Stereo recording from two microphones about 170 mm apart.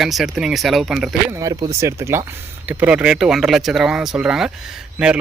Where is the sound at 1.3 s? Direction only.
20° right (ahead or behind).